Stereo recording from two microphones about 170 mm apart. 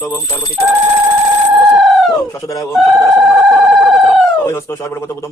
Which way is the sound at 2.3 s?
20° left (ahead or behind).